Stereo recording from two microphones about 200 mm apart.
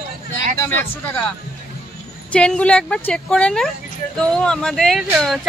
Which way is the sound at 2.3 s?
5° left (ahead or behind).